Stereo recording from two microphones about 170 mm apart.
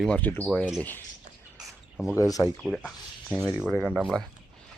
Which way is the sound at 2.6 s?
5° left (ahead or behind).